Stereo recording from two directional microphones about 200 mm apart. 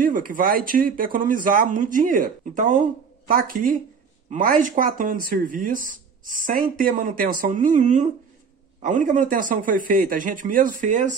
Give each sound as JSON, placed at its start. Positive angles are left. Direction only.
{"t": 0.0, "sound": "speech", "side_deg": -45}